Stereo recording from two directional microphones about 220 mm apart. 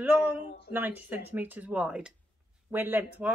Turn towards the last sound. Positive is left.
turn(degrees=-10)  # may be behind; listen again after turning